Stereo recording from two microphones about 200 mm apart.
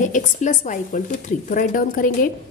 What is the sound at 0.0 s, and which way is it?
A woman's voice, 40° left (ahead or behind).